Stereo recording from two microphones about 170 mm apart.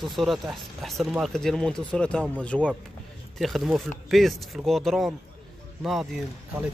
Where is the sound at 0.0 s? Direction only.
Centre (ahead or behind).